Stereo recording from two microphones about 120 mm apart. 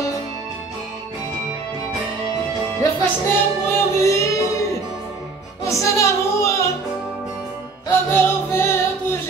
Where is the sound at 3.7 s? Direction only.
25° left (ahead or behind).